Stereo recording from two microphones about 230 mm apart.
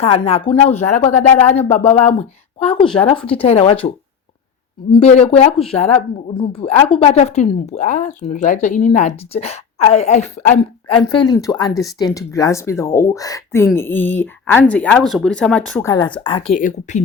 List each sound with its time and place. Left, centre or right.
0.0 s speech: left
16.6 s a woman's voice: left